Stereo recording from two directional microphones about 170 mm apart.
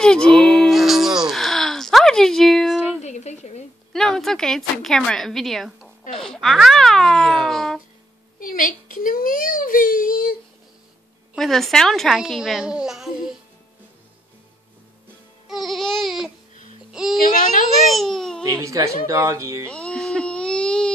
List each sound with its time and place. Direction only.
0.0 s a sound: 5° left (ahead or behind)
3.0 s a sound: 40° left (ahead or behind)
3.9 s a child's voice: centre (ahead or behind)
8.4 s a child's voice: 55° left (ahead or behind)
11.3 s a child's voice: centre (ahead or behind)
15.4 s a child's voice: centre (ahead or behind)
17.2 s a child's voice: 50° left (ahead or behind)
17.9 s babbling: centre (ahead or behind)
18.4 s speech: 20° right (ahead or behind)
19.7 s baby cry: 5° left (ahead or behind)